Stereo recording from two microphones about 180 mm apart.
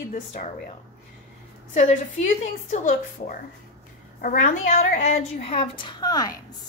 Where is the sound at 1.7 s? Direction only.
40° left (ahead or behind); by 6.3 s 20° left (ahead or behind).